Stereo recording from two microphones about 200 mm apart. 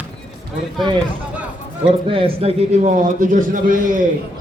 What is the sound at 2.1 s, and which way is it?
A man's voice, 25° right (ahead or behind).